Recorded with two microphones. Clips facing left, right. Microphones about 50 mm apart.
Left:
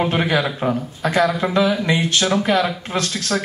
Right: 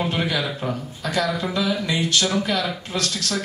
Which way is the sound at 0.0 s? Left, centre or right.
Left.